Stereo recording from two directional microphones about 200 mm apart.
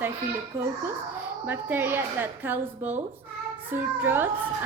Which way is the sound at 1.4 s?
10° right (ahead or behind).